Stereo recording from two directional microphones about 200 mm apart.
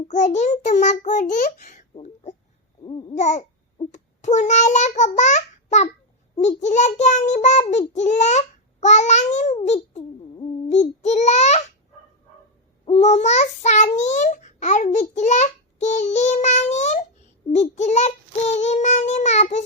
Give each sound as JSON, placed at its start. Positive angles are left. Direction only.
{"t": 0.1, "sound": "a child's voice", "side_deg": 35}
{"t": 2.8, "sound": "babbling", "side_deg": 30}
{"t": 3.8, "sound": "a child's voice", "side_deg": 35}
{"t": 12.8, "sound": "a child's voice", "side_deg": 35}